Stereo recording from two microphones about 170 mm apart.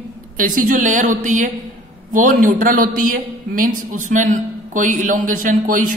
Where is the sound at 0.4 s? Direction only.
50° right (ahead or behind).